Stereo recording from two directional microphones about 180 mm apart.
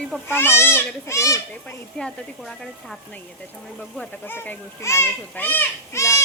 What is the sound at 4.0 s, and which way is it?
A child's voice, 10° left (ahead or behind).